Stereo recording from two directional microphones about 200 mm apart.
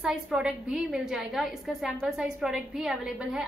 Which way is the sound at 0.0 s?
5° right (ahead or behind).